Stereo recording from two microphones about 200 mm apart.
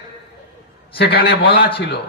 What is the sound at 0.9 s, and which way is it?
Speech, 50° left (ahead or behind).